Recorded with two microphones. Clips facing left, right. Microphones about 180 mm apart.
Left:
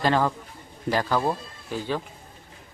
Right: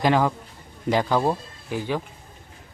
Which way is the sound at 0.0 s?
15° right (ahead or behind).